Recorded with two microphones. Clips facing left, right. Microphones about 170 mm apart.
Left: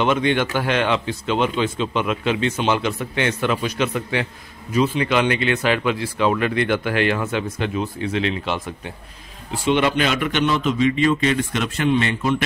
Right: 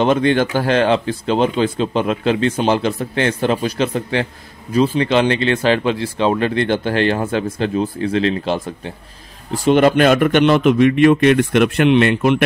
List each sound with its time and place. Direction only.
0.0 s speech: 35° right (ahead or behind)
9.5 s a man's voice: 45° right (ahead or behind)
10.4 s a man's voice: 60° right (ahead or behind)